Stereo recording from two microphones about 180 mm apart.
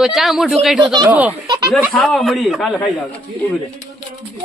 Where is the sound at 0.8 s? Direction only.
25° right (ahead or behind).